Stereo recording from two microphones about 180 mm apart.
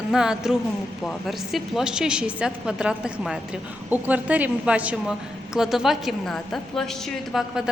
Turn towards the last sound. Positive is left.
turn(degrees=0)  # may be behind; listen again after turning